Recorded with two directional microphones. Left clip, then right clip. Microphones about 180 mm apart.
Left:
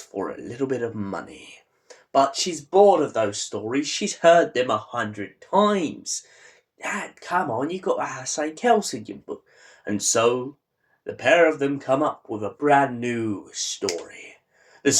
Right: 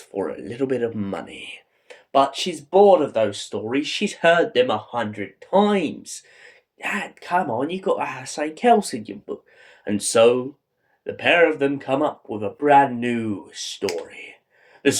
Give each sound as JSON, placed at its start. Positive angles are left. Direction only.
{"t": 0.1, "sound": "speech", "side_deg": -30}